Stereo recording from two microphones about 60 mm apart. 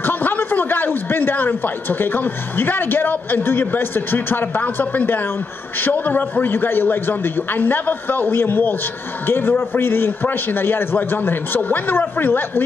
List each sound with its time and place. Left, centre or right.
0.0 s a man's voice: left